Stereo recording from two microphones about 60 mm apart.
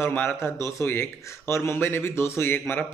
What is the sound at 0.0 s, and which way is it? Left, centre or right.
Speech, left.